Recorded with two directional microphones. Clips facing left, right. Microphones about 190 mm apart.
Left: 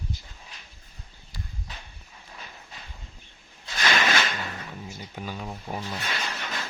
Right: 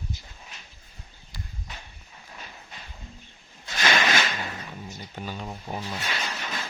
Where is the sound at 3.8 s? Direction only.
45° right (ahead or behind).